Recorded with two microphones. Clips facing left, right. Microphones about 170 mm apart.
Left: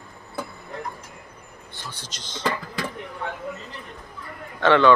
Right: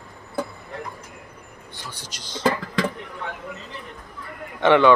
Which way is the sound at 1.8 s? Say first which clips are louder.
Even; 10° right (ahead or behind).